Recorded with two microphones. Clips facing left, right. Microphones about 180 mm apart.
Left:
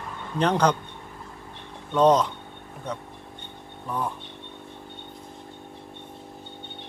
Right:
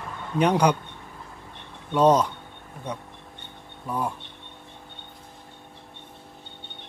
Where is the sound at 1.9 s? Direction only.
10° right (ahead or behind).